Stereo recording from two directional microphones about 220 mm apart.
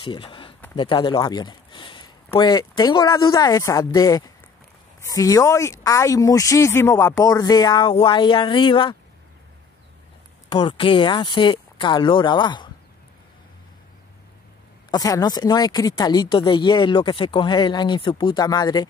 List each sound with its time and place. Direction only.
0.0 s a sound: 20° left (ahead or behind)
0.7 s speech: 20° left (ahead or behind)
10.5 s a woman's voice: 20° left (ahead or behind)
14.9 s a woman's voice: 15° left (ahead or behind)